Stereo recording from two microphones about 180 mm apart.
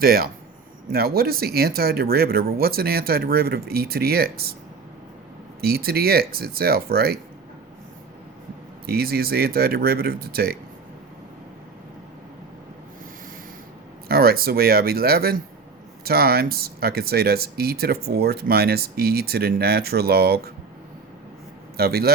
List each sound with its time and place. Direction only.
0.0 s speech: 60° right (ahead or behind)
5.5 s speech: 60° right (ahead or behind)
8.9 s speech: 60° right (ahead or behind)
14.1 s speech: 55° right (ahead or behind)
21.8 s speech: 60° right (ahead or behind)